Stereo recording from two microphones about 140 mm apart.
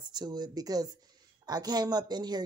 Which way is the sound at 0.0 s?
30° right (ahead or behind).